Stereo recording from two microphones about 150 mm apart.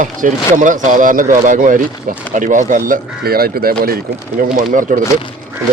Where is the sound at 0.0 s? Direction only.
60° right (ahead or behind); by 4.6 s 75° right (ahead or behind).